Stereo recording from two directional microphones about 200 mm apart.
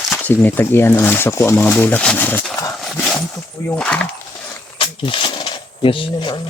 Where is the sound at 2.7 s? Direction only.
Centre (ahead or behind).